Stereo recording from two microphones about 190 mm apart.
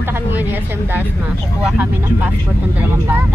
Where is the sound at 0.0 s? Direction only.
10° right (ahead or behind).